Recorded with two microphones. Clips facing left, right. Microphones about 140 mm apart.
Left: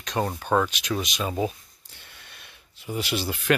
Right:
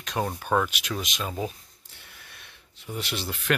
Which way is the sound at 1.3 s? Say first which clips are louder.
Left 5 dB; centre (ahead or behind).